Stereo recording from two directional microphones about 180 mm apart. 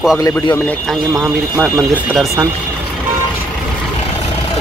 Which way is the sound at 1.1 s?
15° right (ahead or behind).